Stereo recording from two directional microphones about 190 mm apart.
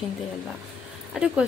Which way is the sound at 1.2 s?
5° right (ahead or behind).